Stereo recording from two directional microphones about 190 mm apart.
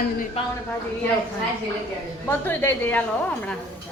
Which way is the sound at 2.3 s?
10° left (ahead or behind).